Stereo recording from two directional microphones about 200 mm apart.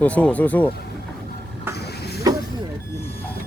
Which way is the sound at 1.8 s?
55° left (ahead or behind).